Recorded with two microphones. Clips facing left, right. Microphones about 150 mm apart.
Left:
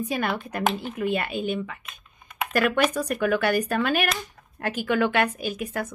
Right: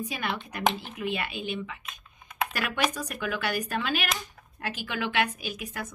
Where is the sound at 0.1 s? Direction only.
50° left (ahead or behind).